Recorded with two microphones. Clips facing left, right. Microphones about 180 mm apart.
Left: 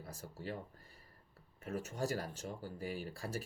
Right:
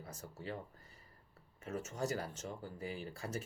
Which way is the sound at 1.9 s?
35° left (ahead or behind).